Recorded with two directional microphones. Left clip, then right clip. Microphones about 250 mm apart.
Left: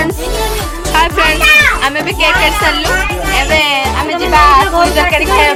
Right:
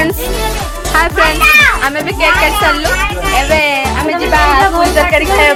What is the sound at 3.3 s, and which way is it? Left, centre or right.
Music, centre.